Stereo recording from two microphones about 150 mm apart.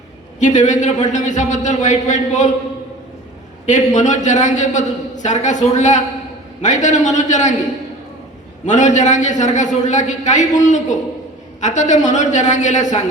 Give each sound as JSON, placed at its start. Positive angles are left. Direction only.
{"t": 0.3, "sound": "a man's voice", "side_deg": 55}
{"t": 3.7, "sound": "a man's voice", "side_deg": 55}
{"t": 8.6, "sound": "a man's voice", "side_deg": 55}